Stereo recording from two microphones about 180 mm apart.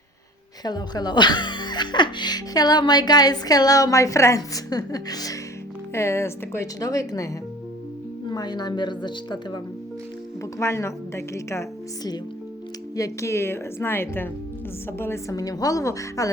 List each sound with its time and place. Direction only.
0.6 s a woman's voice: 20° left (ahead or behind)
8.3 s speech: 25° left (ahead or behind)
10.6 s a woman's voice: 15° left (ahead or behind)
13.0 s a woman's voice: 15° left (ahead or behind)